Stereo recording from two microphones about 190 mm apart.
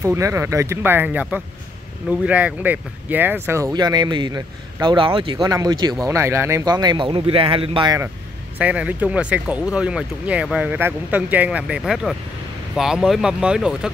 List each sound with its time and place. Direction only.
0.0 s speech: 15° right (ahead or behind)
8.5 s speech: 5° right (ahead or behind)